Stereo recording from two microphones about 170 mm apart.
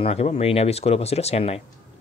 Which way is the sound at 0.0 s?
40° left (ahead or behind).